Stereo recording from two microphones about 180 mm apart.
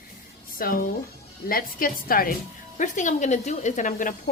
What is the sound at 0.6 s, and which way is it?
A woman's voice, 55° left (ahead or behind).